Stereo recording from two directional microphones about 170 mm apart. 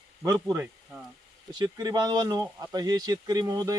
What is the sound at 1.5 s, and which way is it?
Speech, 25° right (ahead or behind).